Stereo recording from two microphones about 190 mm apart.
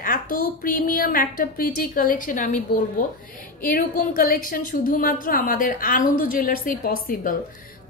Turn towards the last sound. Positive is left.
turn(degrees=45)  # may be behind; listen again after turning